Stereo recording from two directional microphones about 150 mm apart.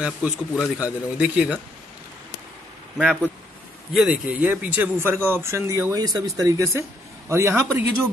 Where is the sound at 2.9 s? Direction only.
5° left (ahead or behind); by 8.1 s 15° right (ahead or behind).